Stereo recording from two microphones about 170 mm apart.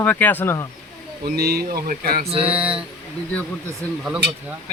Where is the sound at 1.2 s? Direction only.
65° right (ahead or behind).